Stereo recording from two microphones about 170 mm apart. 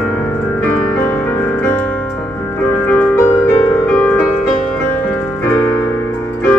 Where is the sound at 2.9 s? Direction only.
10° left (ahead or behind).